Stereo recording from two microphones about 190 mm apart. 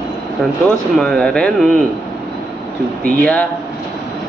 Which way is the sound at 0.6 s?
5° left (ahead or behind).